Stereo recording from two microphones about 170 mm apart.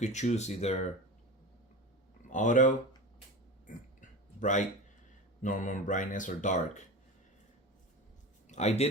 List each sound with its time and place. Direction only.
0.0 s speech: 45° left (ahead or behind)
2.3 s speech: 45° left (ahead or behind)
4.4 s speech: 45° left (ahead or behind)
8.4 s speech: 40° left (ahead or behind)